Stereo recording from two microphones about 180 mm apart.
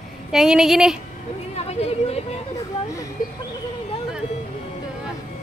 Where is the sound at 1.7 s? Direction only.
35° left (ahead or behind).